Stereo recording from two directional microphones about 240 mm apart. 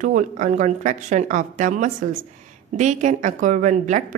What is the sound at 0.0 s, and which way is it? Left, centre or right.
A woman's voice, right.